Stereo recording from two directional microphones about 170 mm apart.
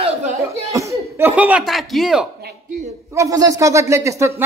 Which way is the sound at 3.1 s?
20° right (ahead or behind).